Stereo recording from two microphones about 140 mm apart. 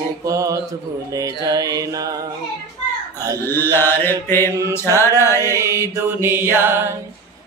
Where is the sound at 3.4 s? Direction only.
15° left (ahead or behind).